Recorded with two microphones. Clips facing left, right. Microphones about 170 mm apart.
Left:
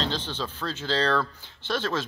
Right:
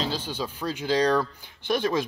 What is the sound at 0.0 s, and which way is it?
Speech, 10° right (ahead or behind).